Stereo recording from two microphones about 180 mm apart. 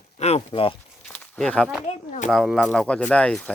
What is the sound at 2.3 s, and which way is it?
Speech, centre (ahead or behind).